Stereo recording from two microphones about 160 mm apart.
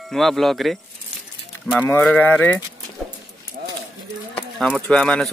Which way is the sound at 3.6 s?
70° right (ahead or behind).